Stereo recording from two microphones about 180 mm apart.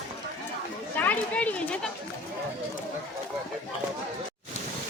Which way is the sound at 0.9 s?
10° left (ahead or behind).